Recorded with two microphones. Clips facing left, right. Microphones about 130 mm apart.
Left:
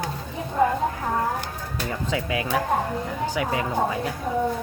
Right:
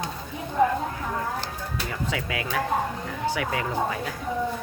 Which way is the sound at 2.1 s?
25° left (ahead or behind).